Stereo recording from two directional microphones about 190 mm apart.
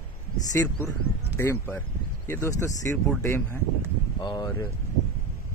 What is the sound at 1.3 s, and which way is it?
Speech, 10° left (ahead or behind).